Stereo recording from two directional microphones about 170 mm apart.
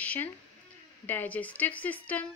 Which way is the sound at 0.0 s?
10° left (ahead or behind).